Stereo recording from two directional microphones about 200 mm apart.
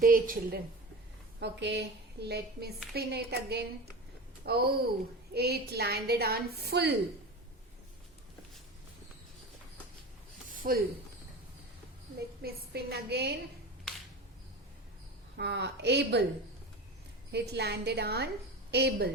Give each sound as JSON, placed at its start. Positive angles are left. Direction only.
{"t": 0.0, "sound": "a woman's voice", "side_deg": -45}
{"t": 1.4, "sound": "a woman's voice", "side_deg": -60}
{"t": 10.5, "sound": "a sound", "side_deg": -45}
{"t": 12.4, "sound": "a woman's voice", "side_deg": -50}
{"t": 15.4, "sound": "a woman's voice", "side_deg": -60}
{"t": 17.3, "sound": "a woman's voice", "side_deg": -55}